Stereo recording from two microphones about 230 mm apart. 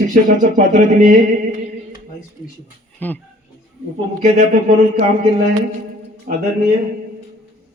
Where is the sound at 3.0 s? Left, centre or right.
Centre.